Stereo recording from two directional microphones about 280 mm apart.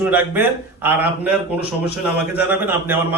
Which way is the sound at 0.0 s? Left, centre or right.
Centre.